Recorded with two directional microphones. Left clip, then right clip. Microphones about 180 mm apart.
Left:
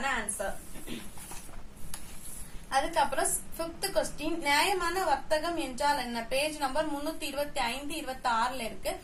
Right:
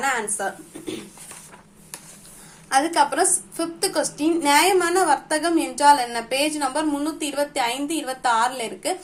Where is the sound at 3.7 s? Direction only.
40° right (ahead or behind).